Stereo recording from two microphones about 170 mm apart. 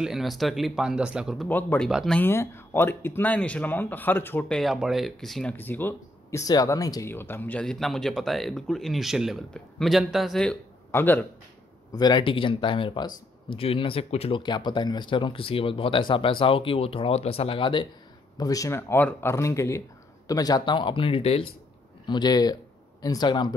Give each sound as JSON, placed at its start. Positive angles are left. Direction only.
{"t": 0.0, "sound": "speech", "side_deg": 0}
{"t": 1.5, "sound": "speech", "side_deg": 10}
{"t": 1.9, "sound": "speech", "side_deg": 0}
{"t": 2.1, "sound": "speech", "side_deg": 15}
{"t": 12.0, "sound": "speech", "side_deg": 30}